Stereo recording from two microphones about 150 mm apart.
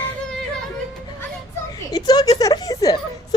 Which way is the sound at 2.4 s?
25° left (ahead or behind).